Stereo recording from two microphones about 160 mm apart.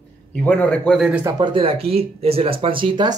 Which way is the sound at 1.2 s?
25° right (ahead or behind).